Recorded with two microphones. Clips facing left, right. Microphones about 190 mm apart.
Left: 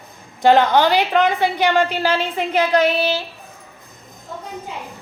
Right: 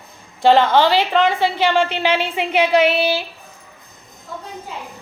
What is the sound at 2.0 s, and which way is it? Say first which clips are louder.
A woman's voice: right 1 dB; 10° right (ahead or behind).